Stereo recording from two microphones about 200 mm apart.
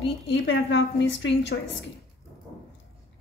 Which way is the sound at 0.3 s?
65° left (ahead or behind).